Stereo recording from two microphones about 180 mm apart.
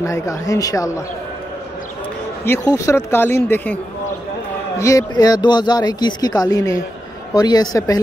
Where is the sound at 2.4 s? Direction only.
15° left (ahead or behind).